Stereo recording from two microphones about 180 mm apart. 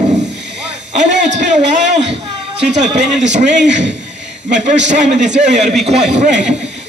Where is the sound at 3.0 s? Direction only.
40° right (ahead or behind).